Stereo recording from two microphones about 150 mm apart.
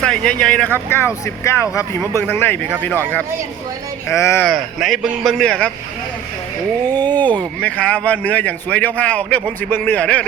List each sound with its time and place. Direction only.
0.0 s speech: 5° left (ahead or behind)
4.4 s a man's voice: centre (ahead or behind)
6.8 s speech: 25° right (ahead or behind)
7.2 s speech: 10° left (ahead or behind)